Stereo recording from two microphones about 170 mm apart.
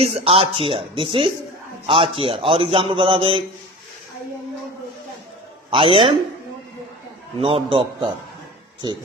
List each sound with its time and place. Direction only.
0.0 s a man's voice: 35° right (ahead or behind)
5.7 s a man's voice: 30° right (ahead or behind)
7.4 s a man's voice: 30° right (ahead or behind)